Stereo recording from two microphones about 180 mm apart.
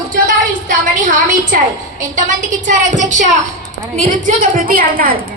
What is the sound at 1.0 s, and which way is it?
A woman's voice, 45° right (ahead or behind).